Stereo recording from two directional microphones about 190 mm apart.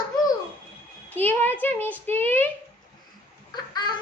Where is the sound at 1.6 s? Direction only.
10° left (ahead or behind).